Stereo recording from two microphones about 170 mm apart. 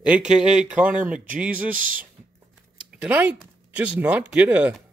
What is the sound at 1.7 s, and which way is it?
Speech, 55° right (ahead or behind).